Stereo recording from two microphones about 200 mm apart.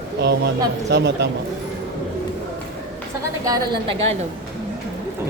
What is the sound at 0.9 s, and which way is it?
Speech, 60° right (ahead or behind).